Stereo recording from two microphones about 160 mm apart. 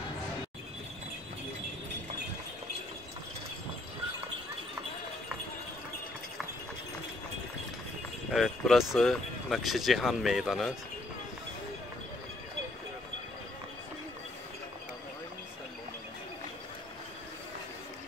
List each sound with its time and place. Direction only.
8.3 s speech: centre (ahead or behind)